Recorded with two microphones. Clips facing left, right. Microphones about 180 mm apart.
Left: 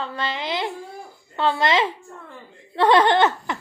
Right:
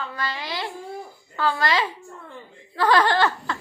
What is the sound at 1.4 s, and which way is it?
Speech, 25° left (ahead or behind).